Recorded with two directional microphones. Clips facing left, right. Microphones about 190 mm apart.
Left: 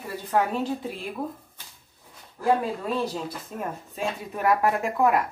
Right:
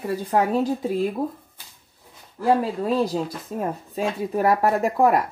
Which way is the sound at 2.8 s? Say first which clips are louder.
Right 6 dB; 35° right (ahead or behind).